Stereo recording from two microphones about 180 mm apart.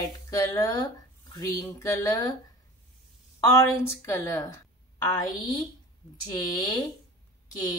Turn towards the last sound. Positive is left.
turn(degrees=20)  # may be behind; listen again after turning